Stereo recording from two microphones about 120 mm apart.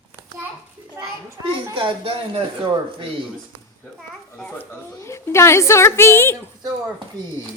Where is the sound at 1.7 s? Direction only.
40° right (ahead or behind).